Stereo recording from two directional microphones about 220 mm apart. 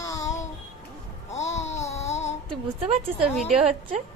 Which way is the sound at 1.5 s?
30° left (ahead or behind).